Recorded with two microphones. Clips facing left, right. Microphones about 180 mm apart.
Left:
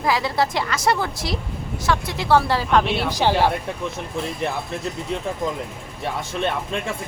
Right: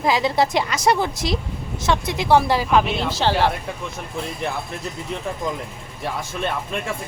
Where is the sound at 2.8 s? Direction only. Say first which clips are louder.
Left 1 dB; 5° left (ahead or behind).